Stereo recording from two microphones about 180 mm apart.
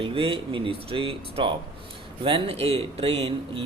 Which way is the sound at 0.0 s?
30° right (ahead or behind).